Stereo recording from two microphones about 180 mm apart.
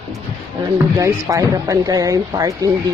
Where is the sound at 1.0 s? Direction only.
20° right (ahead or behind).